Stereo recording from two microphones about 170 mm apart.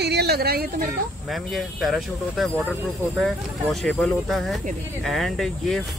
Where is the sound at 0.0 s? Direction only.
75° right (ahead or behind).